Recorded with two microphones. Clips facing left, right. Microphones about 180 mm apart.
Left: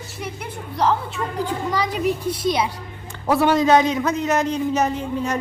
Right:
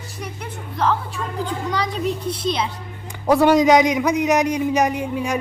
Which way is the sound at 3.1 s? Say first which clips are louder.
Right 3 dB; 15° right (ahead or behind).